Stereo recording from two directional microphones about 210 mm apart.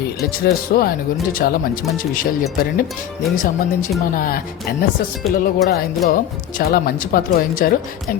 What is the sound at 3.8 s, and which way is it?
Speech, 40° left (ahead or behind).